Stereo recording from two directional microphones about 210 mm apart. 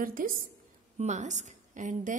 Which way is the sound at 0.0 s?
40° right (ahead or behind).